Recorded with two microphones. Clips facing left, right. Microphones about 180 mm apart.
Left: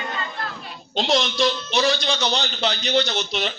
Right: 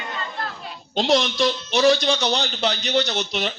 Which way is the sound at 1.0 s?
50° right (ahead or behind).